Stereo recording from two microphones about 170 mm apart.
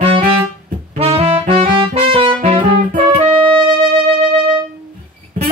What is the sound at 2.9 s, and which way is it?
Music, 45° right (ahead or behind).